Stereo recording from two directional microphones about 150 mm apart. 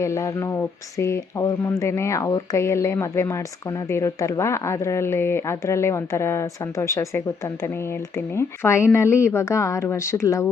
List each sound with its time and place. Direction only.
0.0 s speech: 20° left (ahead or behind)